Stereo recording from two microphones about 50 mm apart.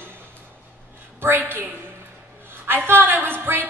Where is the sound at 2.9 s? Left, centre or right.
Right.